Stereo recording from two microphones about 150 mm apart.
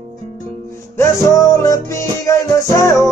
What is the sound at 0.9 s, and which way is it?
Music, 20° left (ahead or behind).